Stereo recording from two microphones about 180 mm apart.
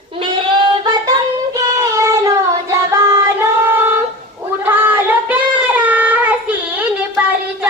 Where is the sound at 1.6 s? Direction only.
20° right (ahead or behind).